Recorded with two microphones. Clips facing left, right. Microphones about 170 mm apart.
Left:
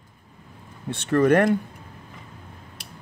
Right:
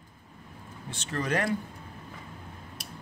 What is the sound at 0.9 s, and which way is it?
Speech, 60° left (ahead or behind).